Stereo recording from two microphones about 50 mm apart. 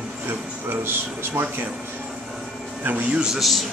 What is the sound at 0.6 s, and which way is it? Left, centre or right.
Speech, right.